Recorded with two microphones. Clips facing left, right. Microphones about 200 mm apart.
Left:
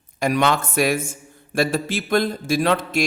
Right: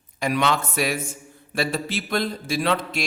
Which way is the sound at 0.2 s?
45° left (ahead or behind).